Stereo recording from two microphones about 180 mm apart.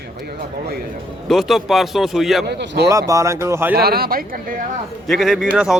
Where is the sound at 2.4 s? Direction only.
70° right (ahead or behind).